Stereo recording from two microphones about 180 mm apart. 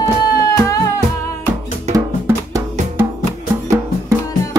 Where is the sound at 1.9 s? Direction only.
15° right (ahead or behind).